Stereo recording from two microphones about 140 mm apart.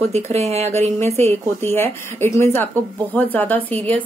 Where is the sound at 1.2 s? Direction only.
15° left (ahead or behind).